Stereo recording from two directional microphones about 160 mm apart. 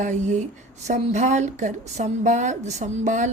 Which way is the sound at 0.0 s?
50° right (ahead or behind).